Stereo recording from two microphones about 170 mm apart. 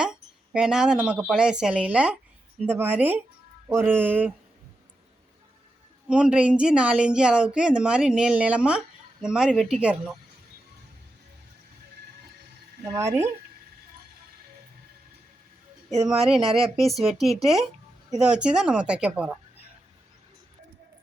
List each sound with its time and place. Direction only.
0.0 s speech: 5° right (ahead or behind)
6.1 s speech: 5° right (ahead or behind)
12.8 s speech: 15° right (ahead or behind)
16.2 s speech: centre (ahead or behind)